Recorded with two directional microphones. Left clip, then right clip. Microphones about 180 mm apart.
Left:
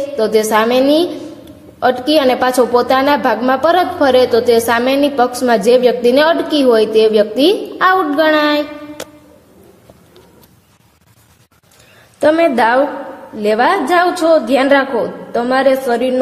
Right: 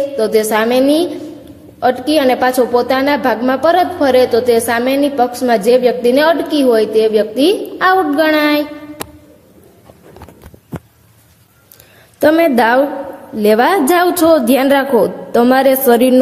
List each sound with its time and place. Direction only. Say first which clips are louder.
0.1 s a woman's voice: left 5 dB; centre (ahead or behind)
12.2 s a woman's voice: right 1 dB; 20° right (ahead or behind)